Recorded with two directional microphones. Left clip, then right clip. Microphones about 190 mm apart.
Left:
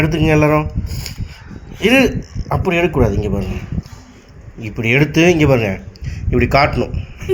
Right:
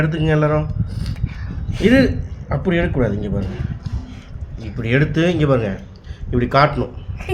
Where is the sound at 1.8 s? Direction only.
20° left (ahead or behind).